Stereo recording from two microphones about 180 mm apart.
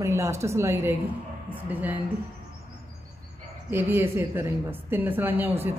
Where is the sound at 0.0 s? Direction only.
15° right (ahead or behind).